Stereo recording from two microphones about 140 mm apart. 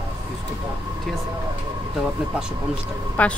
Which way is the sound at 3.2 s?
10° left (ahead or behind).